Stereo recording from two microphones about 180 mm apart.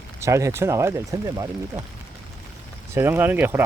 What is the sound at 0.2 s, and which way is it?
Speech, 15° right (ahead or behind).